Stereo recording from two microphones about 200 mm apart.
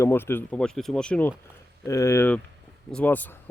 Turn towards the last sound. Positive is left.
turn(degrees=10)  # may be behind; listen again after turning